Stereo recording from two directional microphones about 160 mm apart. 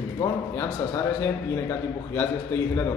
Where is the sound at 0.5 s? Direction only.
15° left (ahead or behind).